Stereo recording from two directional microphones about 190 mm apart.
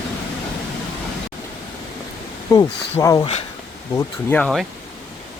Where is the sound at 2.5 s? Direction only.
15° left (ahead or behind).